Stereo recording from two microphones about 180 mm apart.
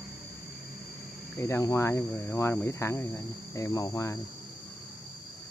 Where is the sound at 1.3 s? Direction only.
15° left (ahead or behind).